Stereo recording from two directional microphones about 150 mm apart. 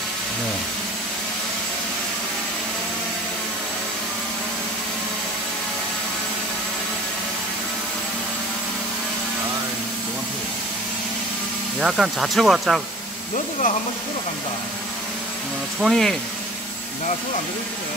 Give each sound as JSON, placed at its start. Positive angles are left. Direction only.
{"t": 11.8, "sound": "speech", "side_deg": -5}
{"t": 13.3, "sound": "speech", "side_deg": 55}
{"t": 15.8, "sound": "speech", "side_deg": 5}